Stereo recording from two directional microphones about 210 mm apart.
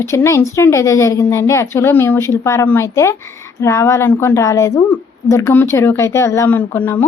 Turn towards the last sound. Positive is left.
turn(degrees=10)  # may be behind; listen again after turning